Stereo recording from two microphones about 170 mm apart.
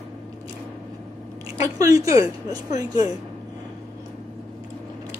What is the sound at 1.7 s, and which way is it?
Speech, 20° right (ahead or behind).